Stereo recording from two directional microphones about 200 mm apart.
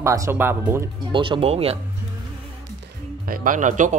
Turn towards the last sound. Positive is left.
turn(degrees=-40)  # may be behind; listen again after turning